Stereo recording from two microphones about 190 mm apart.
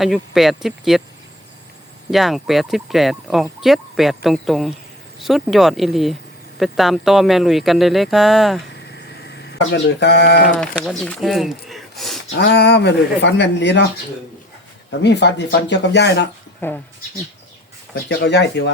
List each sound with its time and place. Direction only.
0.0 s speech: centre (ahead or behind)
2.0 s speech: centre (ahead or behind)
8.9 s a sound: 65° left (ahead or behind)
10.6 s speech: 5° left (ahead or behind)
12.3 s speech: 65° left (ahead or behind)
15.0 s speech: 65° left (ahead or behind)
16.6 s speech: 10° left (ahead or behind)
17.9 s speech: 60° left (ahead or behind)